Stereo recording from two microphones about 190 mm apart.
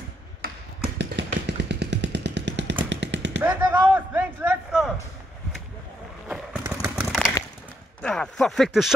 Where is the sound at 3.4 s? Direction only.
10° right (ahead or behind).